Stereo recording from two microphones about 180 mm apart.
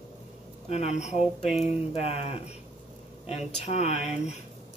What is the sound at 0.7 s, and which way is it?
Speech, 40° left (ahead or behind).